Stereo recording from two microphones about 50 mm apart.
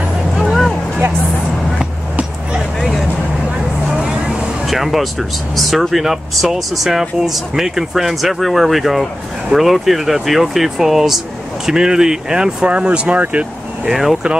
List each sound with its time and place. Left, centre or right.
4.6 s vehicle: centre
5.6 s speech: centre; by 13.5 s right
13.8 s speech: centre